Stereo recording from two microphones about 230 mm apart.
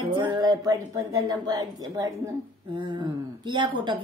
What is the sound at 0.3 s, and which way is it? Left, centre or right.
A woman's voice, centre.